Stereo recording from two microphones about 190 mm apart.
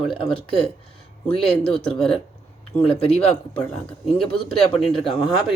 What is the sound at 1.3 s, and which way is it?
Speech, 30° left (ahead or behind).